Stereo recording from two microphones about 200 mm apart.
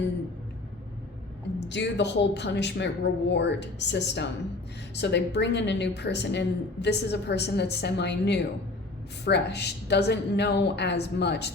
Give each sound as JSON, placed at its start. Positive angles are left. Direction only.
{"t": 1.5, "sound": "a woman's voice", "side_deg": 60}